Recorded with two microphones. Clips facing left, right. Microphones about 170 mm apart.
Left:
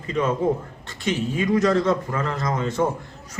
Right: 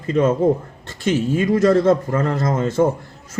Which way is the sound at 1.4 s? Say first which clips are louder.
Right 4 dB; 45° right (ahead or behind).